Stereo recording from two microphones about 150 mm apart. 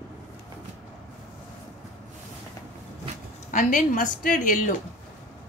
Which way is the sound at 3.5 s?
55° left (ahead or behind).